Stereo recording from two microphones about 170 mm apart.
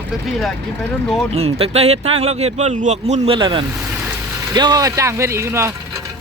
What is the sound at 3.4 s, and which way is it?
Speech, 30° right (ahead or behind).